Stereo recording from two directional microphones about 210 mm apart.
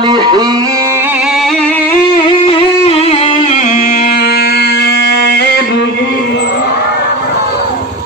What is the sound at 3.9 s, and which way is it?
Music, 50° left (ahead or behind).